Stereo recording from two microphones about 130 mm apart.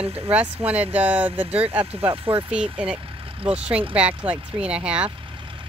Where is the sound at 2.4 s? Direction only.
5° right (ahead or behind).